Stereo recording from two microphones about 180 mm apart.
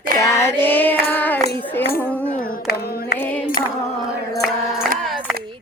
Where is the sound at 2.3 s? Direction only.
50° left (ahead or behind).